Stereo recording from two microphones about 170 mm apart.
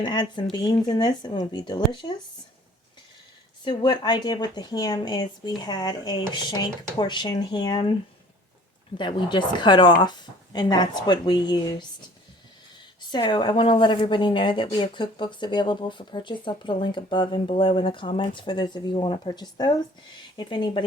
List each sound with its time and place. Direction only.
0.0 s a woman's voice: 25° left (ahead or behind)
3.6 s a woman's voice: 25° left (ahead or behind)
9.0 s a woman's voice: 25° left (ahead or behind)
13.1 s a woman's voice: 25° left (ahead or behind)